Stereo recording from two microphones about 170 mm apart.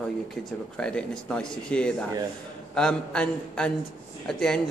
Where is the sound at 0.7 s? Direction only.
5° left (ahead or behind).